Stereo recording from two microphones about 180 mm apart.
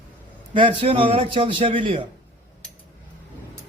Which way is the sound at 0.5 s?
25° right (ahead or behind).